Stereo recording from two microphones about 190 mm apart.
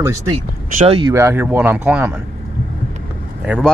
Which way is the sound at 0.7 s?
30° right (ahead or behind).